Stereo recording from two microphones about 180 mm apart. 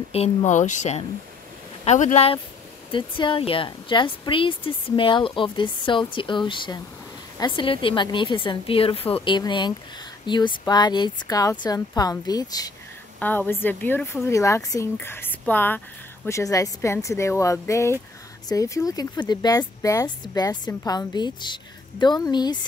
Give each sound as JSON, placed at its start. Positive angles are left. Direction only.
{"t": 0.1, "sound": "speech", "side_deg": 35}
{"t": 13.2, "sound": "speech", "side_deg": 10}